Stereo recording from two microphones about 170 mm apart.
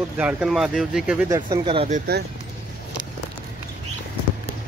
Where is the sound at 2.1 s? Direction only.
70° right (ahead or behind).